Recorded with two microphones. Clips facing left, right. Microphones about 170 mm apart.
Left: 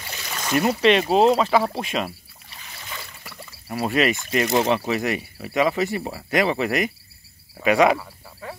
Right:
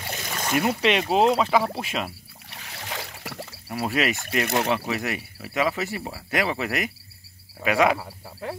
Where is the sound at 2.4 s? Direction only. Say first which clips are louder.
Right 3 dB; 70° right (ahead or behind).